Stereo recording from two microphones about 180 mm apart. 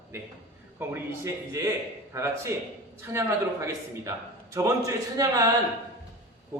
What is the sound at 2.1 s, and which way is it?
A man's voice, 15° right (ahead or behind).